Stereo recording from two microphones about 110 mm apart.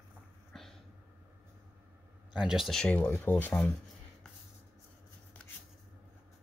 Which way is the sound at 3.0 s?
20° left (ahead or behind).